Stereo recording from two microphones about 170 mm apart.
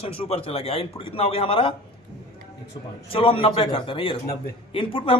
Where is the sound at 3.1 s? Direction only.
30° left (ahead or behind).